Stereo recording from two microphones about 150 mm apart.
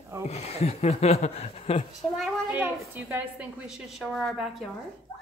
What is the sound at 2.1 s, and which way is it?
Speech, centre (ahead or behind).